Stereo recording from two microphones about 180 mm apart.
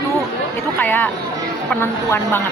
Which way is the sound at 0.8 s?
10° left (ahead or behind).